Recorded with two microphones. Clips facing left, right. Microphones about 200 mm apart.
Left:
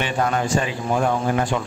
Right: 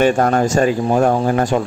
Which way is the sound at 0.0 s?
45° right (ahead or behind).